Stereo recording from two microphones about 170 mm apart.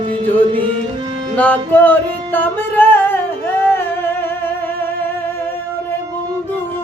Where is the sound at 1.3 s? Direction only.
10° left (ahead or behind).